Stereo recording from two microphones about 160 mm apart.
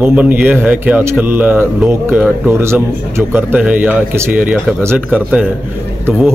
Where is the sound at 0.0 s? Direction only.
10° right (ahead or behind).